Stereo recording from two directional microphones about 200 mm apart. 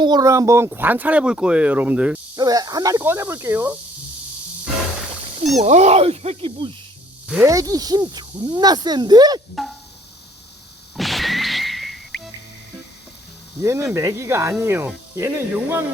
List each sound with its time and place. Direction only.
0.0 s speech: 20° right (ahead or behind)
2.3 s speech: 20° right (ahead or behind)
5.5 s speech: 35° right (ahead or behind)
7.3 s speech: 10° right (ahead or behind)
10.9 s music: centre (ahead or behind)
13.6 s speech: 15° right (ahead or behind)